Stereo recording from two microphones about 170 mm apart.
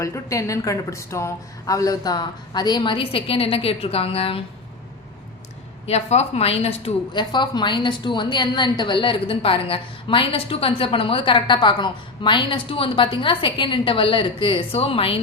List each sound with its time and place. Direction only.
0.0 s a woman's voice: 20° left (ahead or behind); by 4.4 s 35° left (ahead or behind)
5.8 s a woman's voice: 40° left (ahead or behind)